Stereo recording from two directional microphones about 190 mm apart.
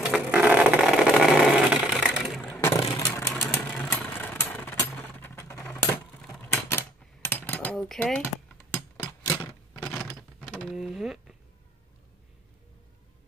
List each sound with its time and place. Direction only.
0.1 s vehicle: 5° right (ahead or behind)
2.5 s vehicle: 15° left (ahead or behind)
6.5 s typewriter: 10° left (ahead or behind)
8.7 s a sound: 10° left (ahead or behind)
10.0 s door: 5° left (ahead or behind)